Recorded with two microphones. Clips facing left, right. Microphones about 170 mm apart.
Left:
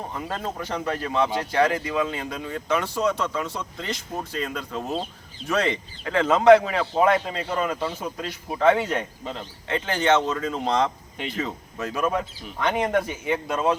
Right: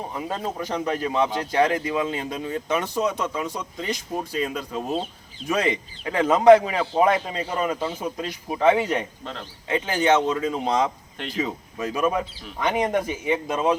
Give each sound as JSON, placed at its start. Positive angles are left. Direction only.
{"t": 0.1, "sound": "speech", "side_deg": -15}